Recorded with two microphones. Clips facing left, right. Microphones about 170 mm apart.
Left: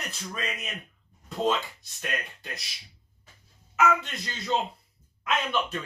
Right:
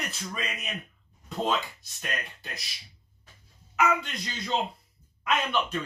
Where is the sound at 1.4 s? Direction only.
Centre (ahead or behind).